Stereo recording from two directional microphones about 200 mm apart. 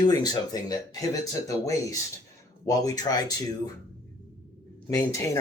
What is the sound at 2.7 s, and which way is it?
Speech, 20° left (ahead or behind).